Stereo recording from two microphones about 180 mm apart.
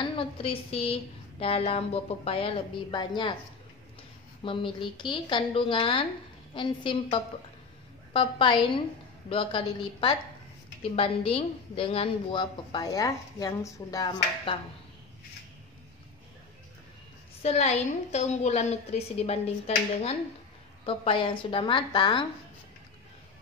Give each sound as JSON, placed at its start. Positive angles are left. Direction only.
{"t": 0.2, "sound": "a woman's voice", "side_deg": 30}
{"t": 4.4, "sound": "a woman's voice", "side_deg": 30}
{"t": 17.4, "sound": "a woman's voice", "side_deg": 35}